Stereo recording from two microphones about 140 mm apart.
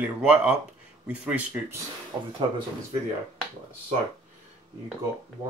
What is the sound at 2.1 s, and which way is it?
Speech, 25° right (ahead or behind).